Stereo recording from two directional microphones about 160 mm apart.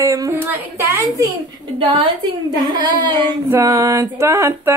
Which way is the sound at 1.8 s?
35° right (ahead or behind).